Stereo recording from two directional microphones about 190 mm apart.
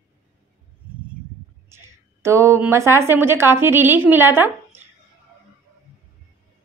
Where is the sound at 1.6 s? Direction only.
15° right (ahead or behind).